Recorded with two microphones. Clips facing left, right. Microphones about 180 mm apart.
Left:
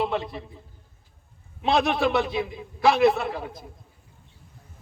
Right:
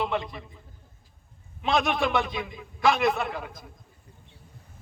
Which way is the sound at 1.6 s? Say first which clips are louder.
Left 3 dB; 30° left (ahead or behind).